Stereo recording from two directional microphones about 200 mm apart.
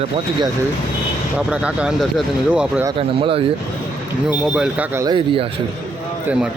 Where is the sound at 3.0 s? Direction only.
30° right (ahead or behind).